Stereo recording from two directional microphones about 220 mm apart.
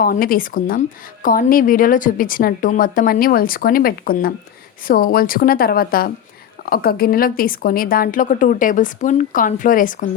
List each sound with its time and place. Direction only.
0.0 s a woman's voice: 40° left (ahead or behind)